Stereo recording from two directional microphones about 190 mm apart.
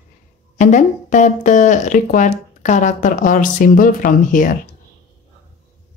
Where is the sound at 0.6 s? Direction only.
40° left (ahead or behind).